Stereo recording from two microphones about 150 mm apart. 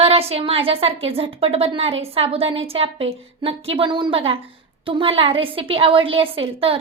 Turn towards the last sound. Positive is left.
turn(degrees=-40)  # may be behind; listen again after turning